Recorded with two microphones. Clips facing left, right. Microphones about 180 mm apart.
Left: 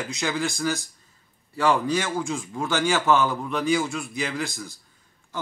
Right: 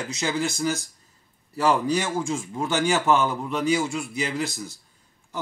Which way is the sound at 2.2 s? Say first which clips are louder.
Right 1 dB; 25° right (ahead or behind).